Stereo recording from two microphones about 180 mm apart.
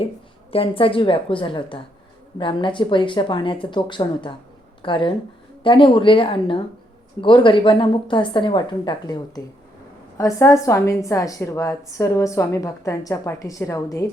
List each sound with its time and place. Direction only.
0.5 s a woman's voice: 30° left (ahead or behind)